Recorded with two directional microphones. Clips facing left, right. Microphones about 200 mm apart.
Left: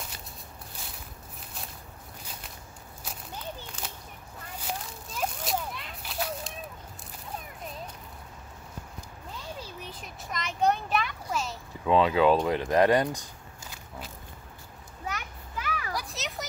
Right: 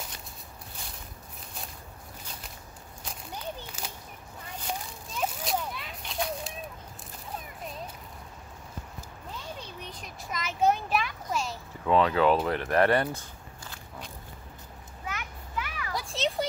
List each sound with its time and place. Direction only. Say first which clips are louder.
3.8 s a sound: even; 5° right (ahead or behind)
9.6 s a sound: left 1 dB; 5° left (ahead or behind)
11.8 s speech: left 1 dB; 15° left (ahead or behind)
13.7 s walk: left 1 dB; 5° left (ahead or behind)
15.0 s children playing: left 1 dB; 40° left (ahead or behind)
15.9 s children playing: right 4 dB; 25° right (ahead or behind)